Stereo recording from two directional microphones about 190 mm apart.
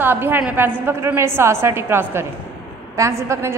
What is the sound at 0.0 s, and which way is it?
A woman's voice, 10° right (ahead or behind).